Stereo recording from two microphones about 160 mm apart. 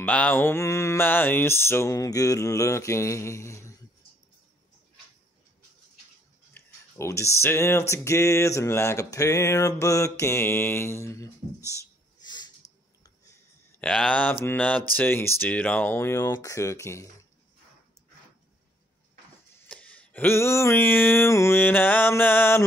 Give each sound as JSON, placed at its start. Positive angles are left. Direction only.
{"t": 0.0, "sound": "speech", "side_deg": 10}
{"t": 6.5, "sound": "speech", "side_deg": 15}
{"t": 12.6, "sound": "a sound", "side_deg": 45}
{"t": 13.0, "sound": "a sound", "side_deg": 20}
{"t": 15.0, "sound": "speech", "side_deg": 15}
{"t": 19.7, "sound": "speech", "side_deg": 10}